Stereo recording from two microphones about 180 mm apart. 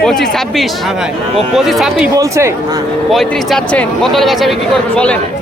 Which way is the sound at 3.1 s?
Centre (ahead or behind).